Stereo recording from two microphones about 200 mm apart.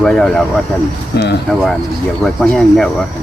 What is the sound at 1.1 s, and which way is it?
Speech, 55° left (ahead or behind).